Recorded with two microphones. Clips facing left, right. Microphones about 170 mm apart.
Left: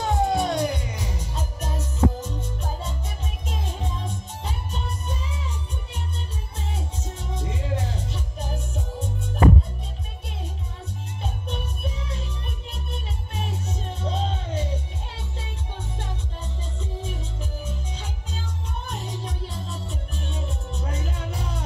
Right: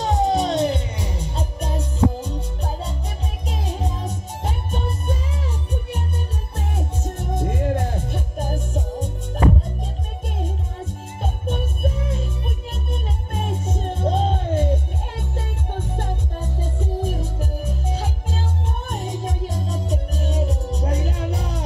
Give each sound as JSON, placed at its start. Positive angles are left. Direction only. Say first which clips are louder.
{"t": 0.0, "sound": "music", "louder": "right 3 dB", "side_deg": -20}
{"t": 6.5, "sound": "music", "louder": "right 6 dB", "side_deg": -55}
{"t": 11.2, "sound": "music", "louder": "right 7 dB", "side_deg": -50}